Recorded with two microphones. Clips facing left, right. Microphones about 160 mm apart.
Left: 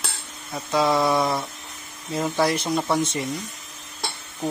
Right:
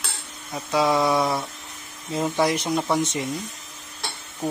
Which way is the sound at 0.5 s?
10° right (ahead or behind).